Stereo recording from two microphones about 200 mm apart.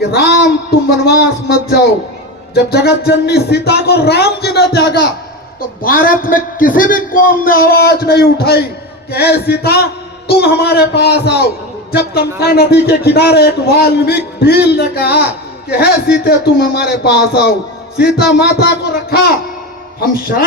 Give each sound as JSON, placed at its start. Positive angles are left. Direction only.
{"t": 0.1, "sound": "a man's voice", "side_deg": 50}